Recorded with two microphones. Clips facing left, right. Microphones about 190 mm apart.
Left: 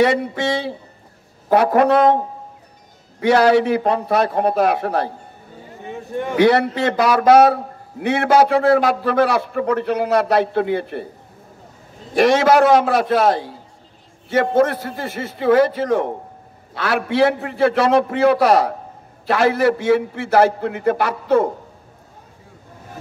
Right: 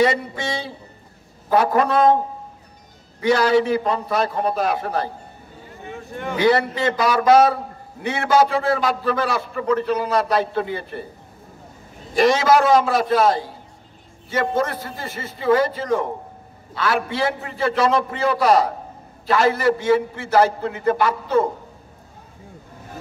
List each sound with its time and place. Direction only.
0.0 s a man's voice: 60° left (ahead or behind)
3.2 s a man's voice: 65° left (ahead or behind)
6.3 s a man's voice: 65° left (ahead or behind)
12.1 s a man's voice: 65° left (ahead or behind)